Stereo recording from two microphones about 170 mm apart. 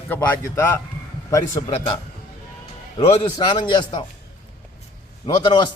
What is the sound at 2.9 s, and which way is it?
A man's voice, 25° left (ahead or behind).